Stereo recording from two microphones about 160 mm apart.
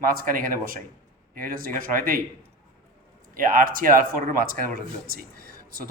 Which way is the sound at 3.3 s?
60° right (ahead or behind).